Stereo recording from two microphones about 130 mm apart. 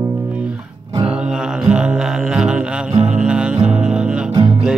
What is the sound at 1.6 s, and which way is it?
Music, 5° right (ahead or behind).